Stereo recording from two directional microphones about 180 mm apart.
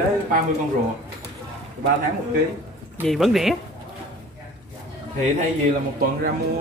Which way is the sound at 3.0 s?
Centre (ahead or behind).